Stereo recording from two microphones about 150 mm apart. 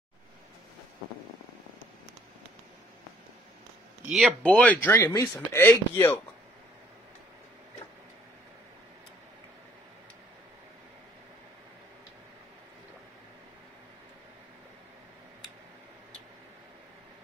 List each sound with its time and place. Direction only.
4.0 s speech: 5° right (ahead or behind)
4.4 s speech: 10° left (ahead or behind)